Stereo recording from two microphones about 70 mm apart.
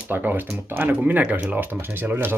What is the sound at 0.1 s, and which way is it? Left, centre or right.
Speech, right.